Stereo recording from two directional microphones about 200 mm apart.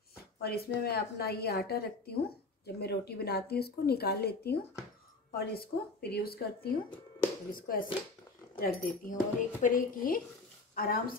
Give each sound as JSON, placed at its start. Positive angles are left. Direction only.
{"t": 0.4, "sound": "a woman's voice", "side_deg": 50}